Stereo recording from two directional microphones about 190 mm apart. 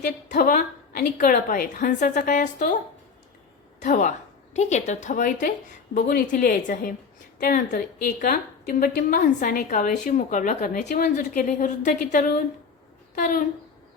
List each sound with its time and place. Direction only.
0.3 s a woman's voice: 45° left (ahead or behind)
3.8 s a woman's voice: 40° left (ahead or behind)